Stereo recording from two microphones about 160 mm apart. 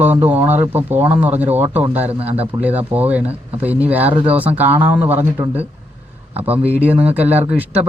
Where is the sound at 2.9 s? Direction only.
10° right (ahead or behind).